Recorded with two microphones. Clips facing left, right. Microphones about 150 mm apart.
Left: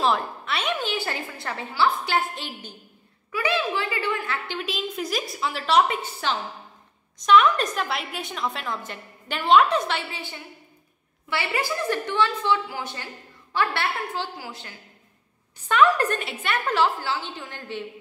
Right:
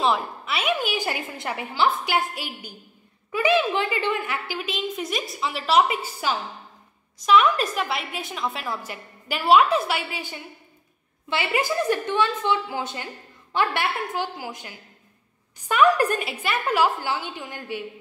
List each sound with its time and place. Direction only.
0.0 s a woman's voice: 5° right (ahead or behind); by 4.4 s 20° right (ahead or behind)
4.5 s a woman's voice: centre (ahead or behind)